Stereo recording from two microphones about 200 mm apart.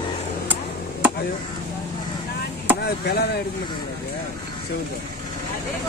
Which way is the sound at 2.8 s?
55° left (ahead or behind).